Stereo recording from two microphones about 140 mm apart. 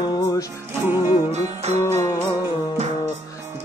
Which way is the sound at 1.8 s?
20° left (ahead or behind).